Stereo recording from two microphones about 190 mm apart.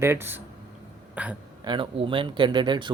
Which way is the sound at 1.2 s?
5° right (ahead or behind).